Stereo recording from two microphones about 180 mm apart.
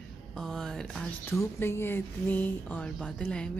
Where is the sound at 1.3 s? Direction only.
15° left (ahead or behind).